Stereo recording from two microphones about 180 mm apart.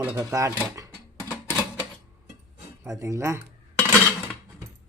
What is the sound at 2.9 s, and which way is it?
Speech, 15° right (ahead or behind).